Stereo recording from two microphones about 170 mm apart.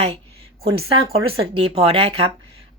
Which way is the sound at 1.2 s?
35° right (ahead or behind).